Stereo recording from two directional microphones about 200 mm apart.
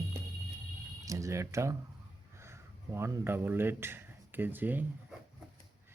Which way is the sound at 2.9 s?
10° right (ahead or behind).